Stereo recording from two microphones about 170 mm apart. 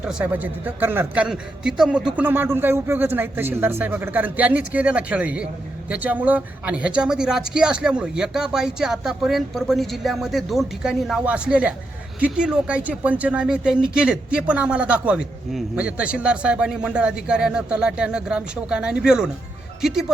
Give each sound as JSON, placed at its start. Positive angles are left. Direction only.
{"t": 0.0, "sound": "speech", "side_deg": -5}